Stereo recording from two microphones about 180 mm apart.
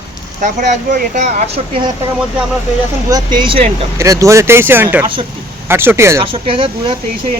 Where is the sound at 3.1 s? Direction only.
25° right (ahead or behind).